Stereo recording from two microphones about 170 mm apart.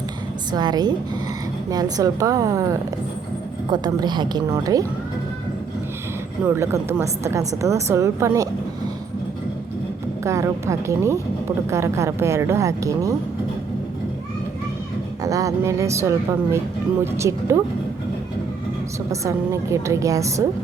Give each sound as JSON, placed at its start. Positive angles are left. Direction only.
{"t": 0.5, "sound": "a woman's voice", "side_deg": -25}
{"t": 6.4, "sound": "a woman's voice", "side_deg": -15}
{"t": 10.2, "sound": "a woman's voice", "side_deg": -20}
{"t": 15.2, "sound": "a woman's voice", "side_deg": -20}
{"t": 19.1, "sound": "a woman's voice", "side_deg": -20}